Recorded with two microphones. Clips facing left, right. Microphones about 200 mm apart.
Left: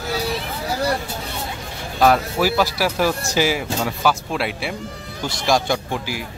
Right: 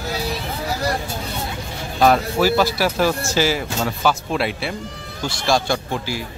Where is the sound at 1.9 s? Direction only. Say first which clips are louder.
Right 1 dB; 5° left (ahead or behind).